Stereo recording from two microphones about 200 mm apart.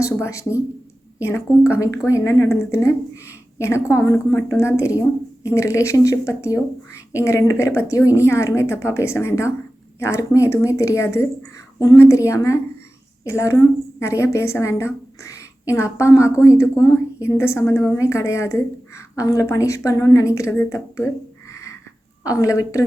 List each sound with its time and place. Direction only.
0.0 s a woman's voice: 15° left (ahead or behind)
22.2 s a woman's voice: 15° left (ahead or behind)